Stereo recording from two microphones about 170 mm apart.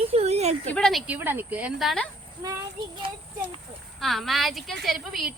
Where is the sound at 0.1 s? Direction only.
35° right (ahead or behind).